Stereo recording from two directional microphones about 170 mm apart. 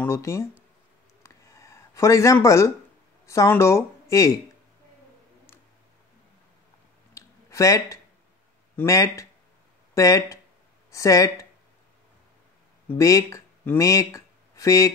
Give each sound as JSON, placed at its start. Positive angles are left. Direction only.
{"t": 0.0, "sound": "speech", "side_deg": 15}
{"t": 1.2, "sound": "a sound", "side_deg": 20}
{"t": 3.3, "sound": "speech", "side_deg": 15}
{"t": 7.2, "sound": "a sound", "side_deg": 20}
{"t": 8.7, "sound": "speech", "side_deg": 20}
{"t": 12.9, "sound": "speech", "side_deg": 20}